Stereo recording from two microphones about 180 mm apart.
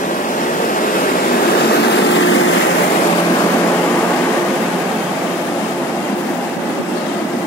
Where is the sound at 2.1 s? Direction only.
90° left.